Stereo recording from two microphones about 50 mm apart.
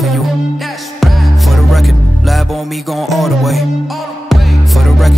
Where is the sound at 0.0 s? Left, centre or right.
Centre.